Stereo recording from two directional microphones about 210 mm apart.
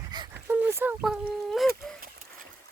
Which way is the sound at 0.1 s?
20° right (ahead or behind).